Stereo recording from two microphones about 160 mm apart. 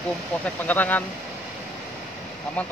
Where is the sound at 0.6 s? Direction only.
10° left (ahead or behind).